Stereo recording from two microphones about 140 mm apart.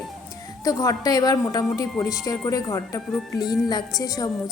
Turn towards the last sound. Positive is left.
turn(degrees=25)  # may be behind; listen again after turning